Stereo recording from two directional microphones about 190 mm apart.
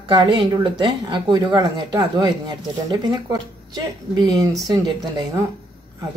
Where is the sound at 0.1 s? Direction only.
25° right (ahead or behind).